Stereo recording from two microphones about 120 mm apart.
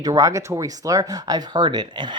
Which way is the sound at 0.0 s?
30° right (ahead or behind).